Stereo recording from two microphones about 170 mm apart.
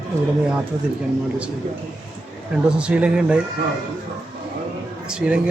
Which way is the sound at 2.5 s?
5° right (ahead or behind).